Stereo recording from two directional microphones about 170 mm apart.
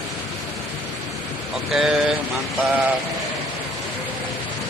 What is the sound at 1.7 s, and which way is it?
Speech, 5° right (ahead or behind).